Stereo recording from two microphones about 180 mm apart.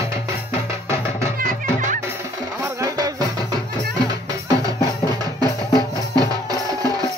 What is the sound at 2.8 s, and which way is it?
Music, 20° right (ahead or behind).